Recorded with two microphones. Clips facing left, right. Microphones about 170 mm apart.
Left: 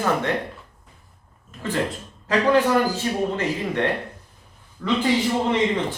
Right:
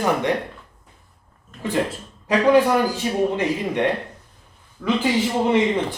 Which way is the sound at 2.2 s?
15° right (ahead or behind).